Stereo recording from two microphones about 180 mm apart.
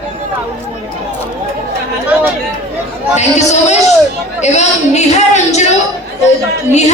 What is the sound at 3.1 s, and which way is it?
Speech, 40° left (ahead or behind).